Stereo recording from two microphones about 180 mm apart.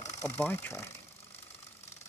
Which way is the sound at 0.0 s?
10° left (ahead or behind).